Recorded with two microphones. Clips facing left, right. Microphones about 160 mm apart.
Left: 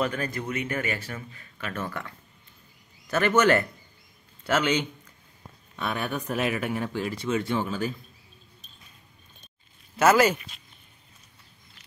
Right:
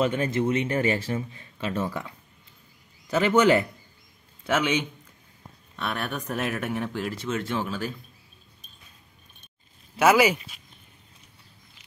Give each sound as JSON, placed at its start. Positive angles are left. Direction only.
{"t": 0.0, "sound": "speech", "side_deg": -25}
{"t": 3.1, "sound": "speech", "side_deg": -15}
{"t": 9.9, "sound": "speech", "side_deg": -10}